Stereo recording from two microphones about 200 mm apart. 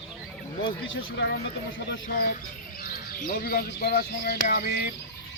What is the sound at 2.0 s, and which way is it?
Speech, 45° left (ahead or behind).